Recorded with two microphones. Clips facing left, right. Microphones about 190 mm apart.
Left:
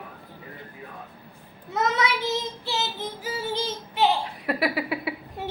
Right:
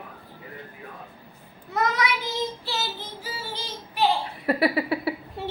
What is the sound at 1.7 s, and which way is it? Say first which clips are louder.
Child singing: even; 25° left (ahead or behind).